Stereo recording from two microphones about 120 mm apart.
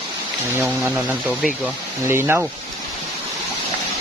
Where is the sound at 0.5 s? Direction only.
15° right (ahead or behind).